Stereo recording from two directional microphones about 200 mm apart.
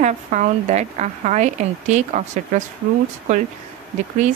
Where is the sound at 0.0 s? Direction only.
40° right (ahead or behind).